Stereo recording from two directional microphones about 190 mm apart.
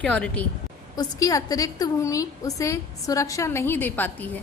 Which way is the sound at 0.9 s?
20° left (ahead or behind).